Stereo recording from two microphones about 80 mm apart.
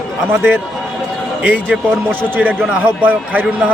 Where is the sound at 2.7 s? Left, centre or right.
Right.